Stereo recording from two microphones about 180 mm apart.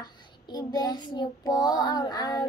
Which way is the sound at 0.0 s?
20° left (ahead or behind).